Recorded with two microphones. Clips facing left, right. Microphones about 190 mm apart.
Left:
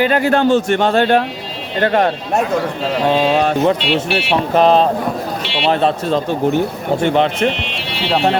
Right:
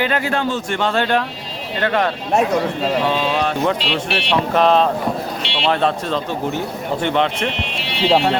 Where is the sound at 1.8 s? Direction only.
40° left (ahead or behind).